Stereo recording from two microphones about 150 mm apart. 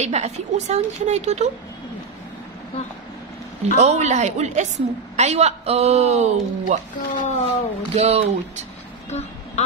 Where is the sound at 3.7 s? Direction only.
50° right (ahead or behind).